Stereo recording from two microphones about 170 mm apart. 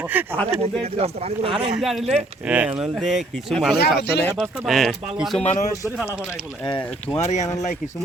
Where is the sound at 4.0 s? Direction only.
75° left (ahead or behind).